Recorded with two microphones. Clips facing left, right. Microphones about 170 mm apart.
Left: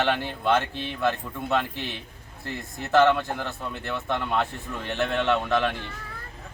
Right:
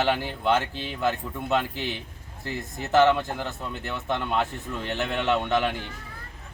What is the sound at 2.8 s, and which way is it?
Speech, 5° right (ahead or behind).